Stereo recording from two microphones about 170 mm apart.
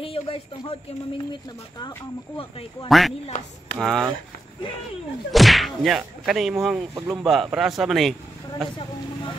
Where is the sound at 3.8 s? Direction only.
Centre (ahead or behind).